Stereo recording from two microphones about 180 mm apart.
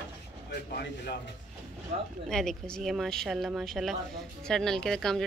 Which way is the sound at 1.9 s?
40° right (ahead or behind).